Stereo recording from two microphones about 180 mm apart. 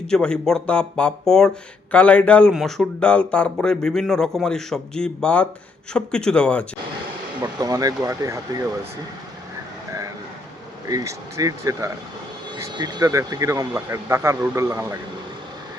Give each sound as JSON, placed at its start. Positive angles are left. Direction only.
{"t": 0.1, "sound": "speech", "side_deg": 5}
{"t": 7.6, "sound": "speech", "side_deg": -20}
{"t": 10.8, "sound": "speech", "side_deg": -20}